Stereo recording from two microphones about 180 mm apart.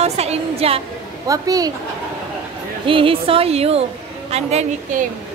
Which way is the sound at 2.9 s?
30° right (ahead or behind).